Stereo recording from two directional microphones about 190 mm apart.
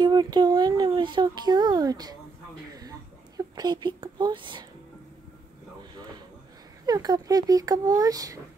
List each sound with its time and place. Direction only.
0.0 s speech: 20° right (ahead or behind)
2.7 s a sound: 20° right (ahead or behind)
6.9 s speech: 20° right (ahead or behind)